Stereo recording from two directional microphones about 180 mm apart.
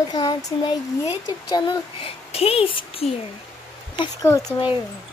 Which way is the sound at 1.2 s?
25° left (ahead or behind).